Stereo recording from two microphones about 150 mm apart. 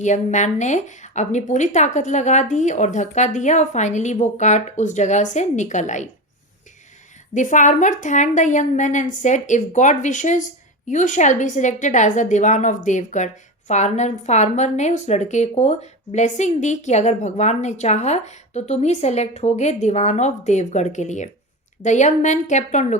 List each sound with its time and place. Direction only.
0.0 s a woman's voice: 50° left (ahead or behind)
7.3 s a woman's voice: 55° left (ahead or behind)